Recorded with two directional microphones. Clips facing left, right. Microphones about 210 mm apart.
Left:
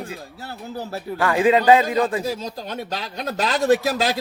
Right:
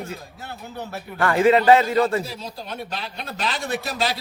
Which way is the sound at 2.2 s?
45° left (ahead or behind).